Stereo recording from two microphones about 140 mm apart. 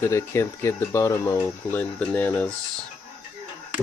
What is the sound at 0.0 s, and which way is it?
Speech, 20° left (ahead or behind).